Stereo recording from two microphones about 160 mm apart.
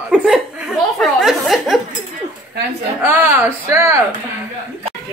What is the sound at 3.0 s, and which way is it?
Speech, 15° right (ahead or behind).